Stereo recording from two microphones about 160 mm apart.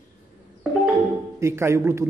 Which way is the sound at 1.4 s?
15° right (ahead or behind).